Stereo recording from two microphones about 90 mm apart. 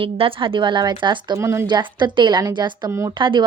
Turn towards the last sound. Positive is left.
turn(degrees=-65)  # may be behind; listen again after turning